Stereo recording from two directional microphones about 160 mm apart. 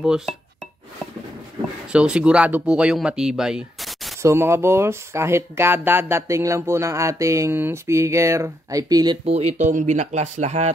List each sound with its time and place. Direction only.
0.0 s speech: 5° right (ahead or behind)
1.9 s speech: 5° right (ahead or behind)
4.2 s speech: 15° right (ahead or behind)
9.2 s speech: 40° right (ahead or behind)